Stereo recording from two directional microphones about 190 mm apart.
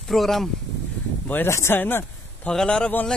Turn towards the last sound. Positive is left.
turn(degrees=5)  # may be behind; listen again after turning